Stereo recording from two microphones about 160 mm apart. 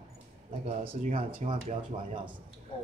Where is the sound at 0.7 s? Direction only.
50° right (ahead or behind).